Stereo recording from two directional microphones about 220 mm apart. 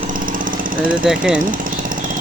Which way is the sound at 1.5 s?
40° right (ahead or behind).